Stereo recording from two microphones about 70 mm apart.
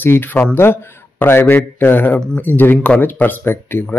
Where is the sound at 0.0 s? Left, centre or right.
Left.